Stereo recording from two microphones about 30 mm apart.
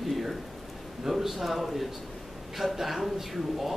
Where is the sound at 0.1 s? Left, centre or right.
Centre.